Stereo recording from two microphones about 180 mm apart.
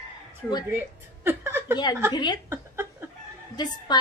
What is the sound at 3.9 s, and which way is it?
Speech, 25° left (ahead or behind).